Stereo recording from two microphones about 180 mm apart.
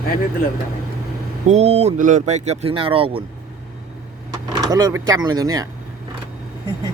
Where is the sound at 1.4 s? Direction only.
35° right (ahead or behind).